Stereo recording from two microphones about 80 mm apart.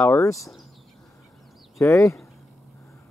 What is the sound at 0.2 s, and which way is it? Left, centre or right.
Speech, left.